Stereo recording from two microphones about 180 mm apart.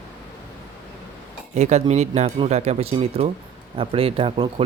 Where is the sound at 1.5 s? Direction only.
40° right (ahead or behind).